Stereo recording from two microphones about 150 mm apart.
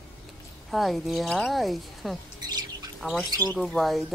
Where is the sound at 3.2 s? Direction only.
25° right (ahead or behind).